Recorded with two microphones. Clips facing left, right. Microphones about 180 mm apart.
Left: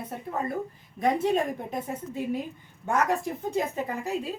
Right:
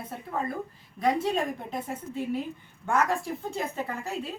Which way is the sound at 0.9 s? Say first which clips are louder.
Left 2 dB; 20° left (ahead or behind).